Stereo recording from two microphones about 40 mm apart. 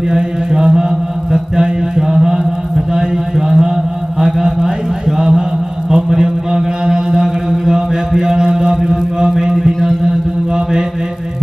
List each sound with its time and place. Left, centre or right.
0.1 s mantra: centre
2.9 s a sound: centre
4.2 s mantra: centre